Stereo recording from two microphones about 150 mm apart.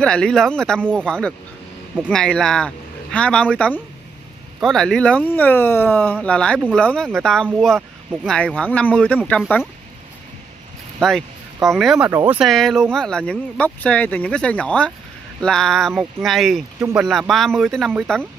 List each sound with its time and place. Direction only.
0.0 s speech: 5° left (ahead or behind)
11.0 s speech: centre (ahead or behind)
12.1 s speech: 20° right (ahead or behind)
12.4 s speech: centre (ahead or behind)